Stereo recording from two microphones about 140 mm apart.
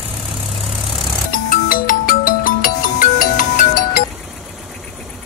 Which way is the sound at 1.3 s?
80° left.